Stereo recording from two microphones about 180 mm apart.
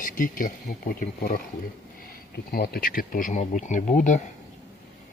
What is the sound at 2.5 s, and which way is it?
Speech, 55° left (ahead or behind).